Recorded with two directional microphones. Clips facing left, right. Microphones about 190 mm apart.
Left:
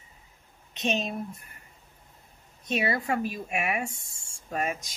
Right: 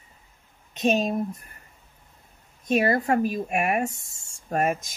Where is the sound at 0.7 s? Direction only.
45° right (ahead or behind).